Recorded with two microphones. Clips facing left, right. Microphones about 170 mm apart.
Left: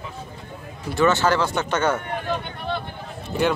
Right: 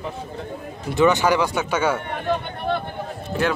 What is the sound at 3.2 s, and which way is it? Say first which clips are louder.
Run: left 1 dB; centre (ahead or behind).